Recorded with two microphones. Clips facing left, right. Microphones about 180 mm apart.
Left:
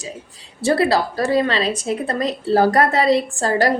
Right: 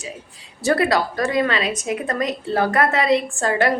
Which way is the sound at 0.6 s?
30° left (ahead or behind).